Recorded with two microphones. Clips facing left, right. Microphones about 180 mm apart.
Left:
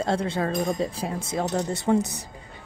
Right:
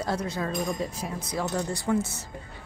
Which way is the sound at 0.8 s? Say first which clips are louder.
Left 4 dB; 30° left (ahead or behind).